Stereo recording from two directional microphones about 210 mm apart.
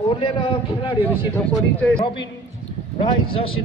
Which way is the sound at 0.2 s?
25° left (ahead or behind).